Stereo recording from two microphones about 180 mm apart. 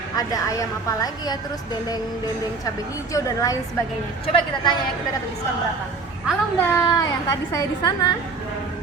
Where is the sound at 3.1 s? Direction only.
20° left (ahead or behind).